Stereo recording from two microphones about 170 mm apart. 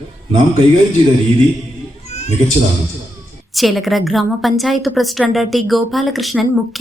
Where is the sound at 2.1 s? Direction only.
40° left (ahead or behind).